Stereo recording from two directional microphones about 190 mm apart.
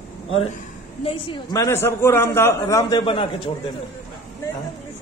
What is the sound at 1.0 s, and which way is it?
A man's voice, 25° left (ahead or behind).